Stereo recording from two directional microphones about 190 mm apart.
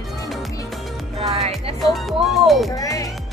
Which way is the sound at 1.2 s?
30° right (ahead or behind).